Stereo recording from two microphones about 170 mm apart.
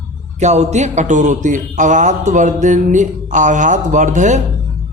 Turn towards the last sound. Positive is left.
turn(degrees=-45)  # may be behind; listen again after turning